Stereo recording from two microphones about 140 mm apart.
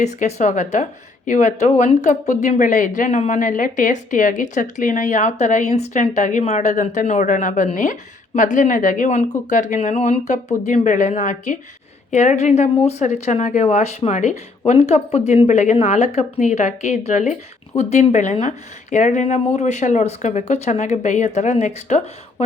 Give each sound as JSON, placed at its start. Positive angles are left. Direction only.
{"t": 0.0, "sound": "speech", "side_deg": 55}